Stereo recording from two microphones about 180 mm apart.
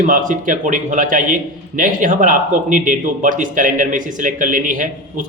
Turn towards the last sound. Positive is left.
turn(degrees=-45)  # may be behind; listen again after turning